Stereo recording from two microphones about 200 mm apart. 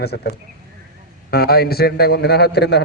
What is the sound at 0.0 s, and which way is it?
Speech, 55° left (ahead or behind).